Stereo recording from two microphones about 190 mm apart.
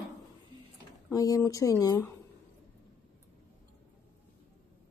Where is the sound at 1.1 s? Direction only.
20° left (ahead or behind).